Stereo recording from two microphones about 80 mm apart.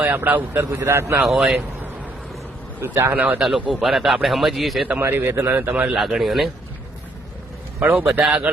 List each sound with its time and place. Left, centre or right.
0.0 s a man's voice: right
0.7 s a man's voice: right
1.2 s a man's voice: centre
2.8 s a man's voice: right
3.7 s a man's voice: centre
4.9 s a man's voice: right
6.0 s a man's voice: centre
7.9 s speech: centre